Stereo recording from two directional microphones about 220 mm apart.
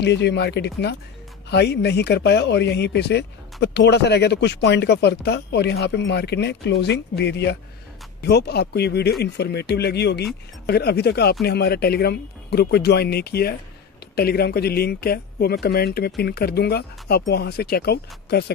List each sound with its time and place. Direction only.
0.0 s speech: 50° left (ahead or behind)